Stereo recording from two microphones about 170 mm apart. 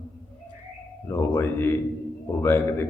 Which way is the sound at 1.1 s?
15° left (ahead or behind).